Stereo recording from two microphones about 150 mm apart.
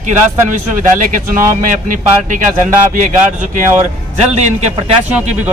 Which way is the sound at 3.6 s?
50° right (ahead or behind).